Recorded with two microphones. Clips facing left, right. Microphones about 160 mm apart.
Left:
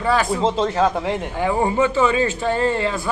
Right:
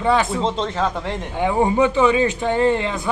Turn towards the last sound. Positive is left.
turn(degrees=-20)  # may be behind; listen again after turning